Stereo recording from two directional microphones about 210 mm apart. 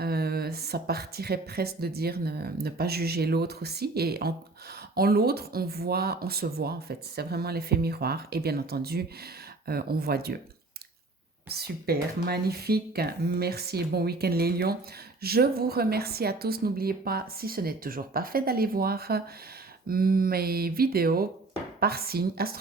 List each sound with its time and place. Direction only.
0.0 s speech: 50° right (ahead or behind)
11.4 s speech: 50° right (ahead or behind)